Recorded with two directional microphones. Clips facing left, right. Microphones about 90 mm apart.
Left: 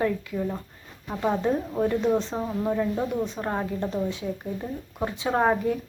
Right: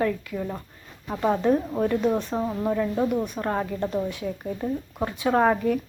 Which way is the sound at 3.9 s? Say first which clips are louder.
Right 1 dB; 25° right (ahead or behind).